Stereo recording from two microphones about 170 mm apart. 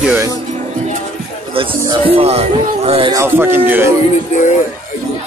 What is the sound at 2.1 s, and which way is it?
Speech, 35° right (ahead or behind).